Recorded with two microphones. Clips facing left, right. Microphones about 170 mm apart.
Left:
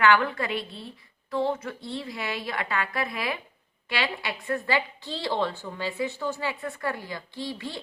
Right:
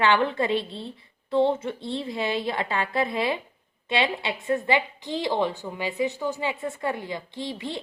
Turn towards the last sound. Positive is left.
turn(degrees=-20)  # may be behind; listen again after turning